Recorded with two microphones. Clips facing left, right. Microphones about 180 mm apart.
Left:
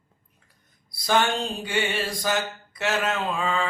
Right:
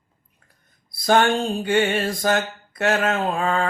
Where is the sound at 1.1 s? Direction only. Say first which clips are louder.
Right 5 dB; 50° right (ahead or behind).